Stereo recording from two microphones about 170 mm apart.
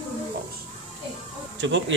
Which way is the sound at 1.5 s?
90° right.